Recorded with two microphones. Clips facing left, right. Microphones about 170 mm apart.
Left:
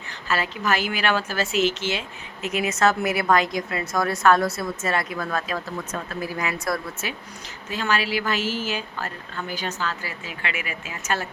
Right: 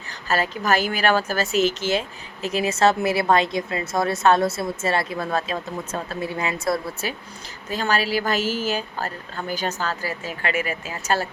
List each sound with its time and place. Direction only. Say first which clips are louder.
0.3 s a woman's voice: right 3 dB; 40° right (ahead or behind)